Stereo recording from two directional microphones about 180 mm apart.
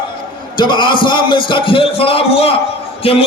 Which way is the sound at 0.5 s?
25° left (ahead or behind).